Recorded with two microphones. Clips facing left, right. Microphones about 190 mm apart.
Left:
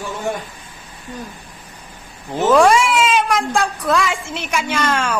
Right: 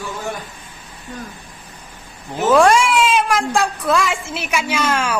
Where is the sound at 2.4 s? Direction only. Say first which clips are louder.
Even; centre (ahead or behind).